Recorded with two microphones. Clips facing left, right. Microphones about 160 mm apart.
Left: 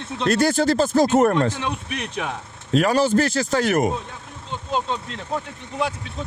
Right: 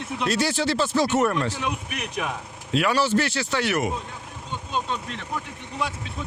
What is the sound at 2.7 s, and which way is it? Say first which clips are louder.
Speech: left 4 dB; 40° left (ahead or behind).